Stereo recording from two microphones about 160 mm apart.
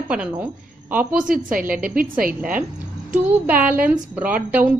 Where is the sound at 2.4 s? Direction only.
10° right (ahead or behind).